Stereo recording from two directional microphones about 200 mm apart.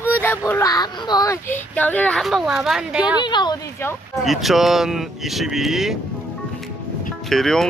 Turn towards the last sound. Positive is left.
turn(degrees=0)  # may be behind; listen again after turning